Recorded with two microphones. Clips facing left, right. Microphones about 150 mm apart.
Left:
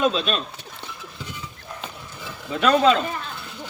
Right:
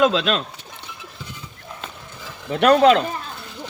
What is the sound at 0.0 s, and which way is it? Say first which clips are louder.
Speech: right 4 dB; 90° right.